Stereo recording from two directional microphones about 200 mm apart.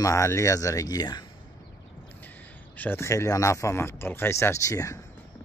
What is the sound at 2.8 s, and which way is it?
Speech, 10° left (ahead or behind).